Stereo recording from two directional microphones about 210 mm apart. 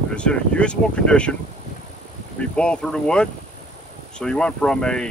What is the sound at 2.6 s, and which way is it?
Speech, 5° left (ahead or behind).